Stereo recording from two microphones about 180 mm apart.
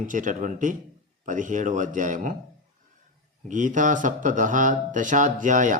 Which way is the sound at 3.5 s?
45° right (ahead or behind).